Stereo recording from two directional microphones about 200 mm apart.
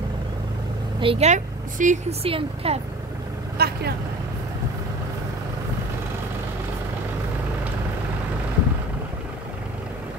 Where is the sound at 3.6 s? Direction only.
55° right (ahead or behind).